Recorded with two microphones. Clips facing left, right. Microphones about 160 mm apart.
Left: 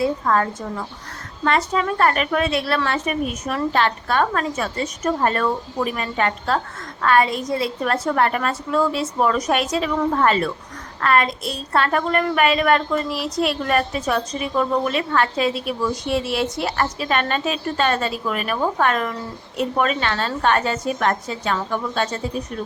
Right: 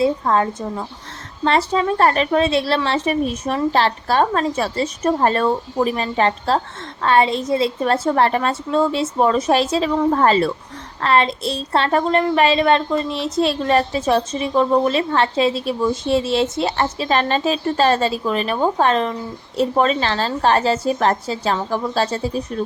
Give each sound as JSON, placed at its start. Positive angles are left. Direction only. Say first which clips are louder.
{"t": 0.0, "sound": "a woman's voice", "louder": "right 3 dB", "side_deg": -20}